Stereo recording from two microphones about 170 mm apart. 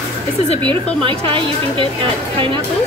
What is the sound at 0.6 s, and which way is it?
Speech, 30° right (ahead or behind).